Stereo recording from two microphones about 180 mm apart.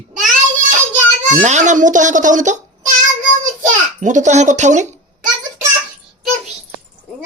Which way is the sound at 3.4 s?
45° right (ahead or behind).